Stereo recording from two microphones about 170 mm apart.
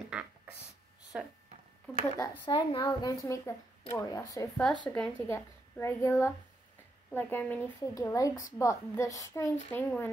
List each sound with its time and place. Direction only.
0.1 s a sound: 5° right (ahead or behind)
1.1 s speech: 5° right (ahead or behind)
2.1 s a woman's voice: 25° left (ahead or behind)
4.8 s a woman's voice: 5° left (ahead or behind)